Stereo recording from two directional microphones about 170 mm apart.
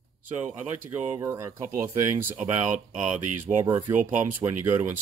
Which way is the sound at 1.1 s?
20° right (ahead or behind).